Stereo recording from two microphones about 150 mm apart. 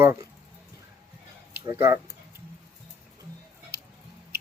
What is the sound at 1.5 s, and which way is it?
Speech, 20° right (ahead or behind).